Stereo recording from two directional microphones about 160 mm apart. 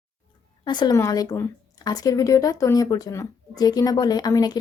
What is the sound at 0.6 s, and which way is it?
Speech, 25° left (ahead or behind).